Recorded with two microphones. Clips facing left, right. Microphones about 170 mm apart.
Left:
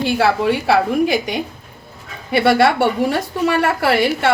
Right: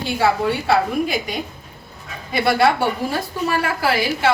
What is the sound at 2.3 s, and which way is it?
A woman's voice, 70° left (ahead or behind).